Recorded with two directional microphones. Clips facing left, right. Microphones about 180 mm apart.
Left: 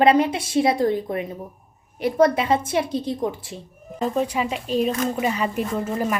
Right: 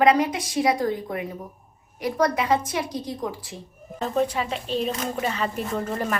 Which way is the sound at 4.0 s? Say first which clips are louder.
Left 1 dB; 10° left (ahead or behind).